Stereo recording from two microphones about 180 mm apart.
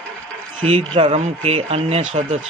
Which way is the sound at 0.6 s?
30° right (ahead or behind).